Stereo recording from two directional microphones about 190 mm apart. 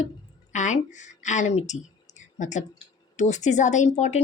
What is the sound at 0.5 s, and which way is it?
Speech, 40° left (ahead or behind).